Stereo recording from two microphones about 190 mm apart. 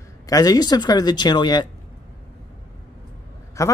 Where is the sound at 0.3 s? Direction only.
20° left (ahead or behind).